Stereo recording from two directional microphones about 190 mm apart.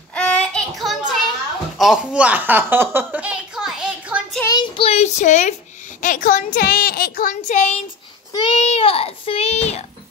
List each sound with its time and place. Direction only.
0.1 s child singing: 5° left (ahead or behind)
1.8 s a sound: 5° right (ahead or behind)
4.4 s a child's voice: 20° left (ahead or behind)